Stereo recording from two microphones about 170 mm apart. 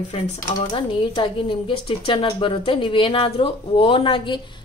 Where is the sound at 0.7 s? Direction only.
30° left (ahead or behind).